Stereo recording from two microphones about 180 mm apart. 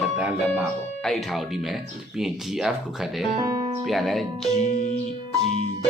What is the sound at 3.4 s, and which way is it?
Music, 20° right (ahead or behind).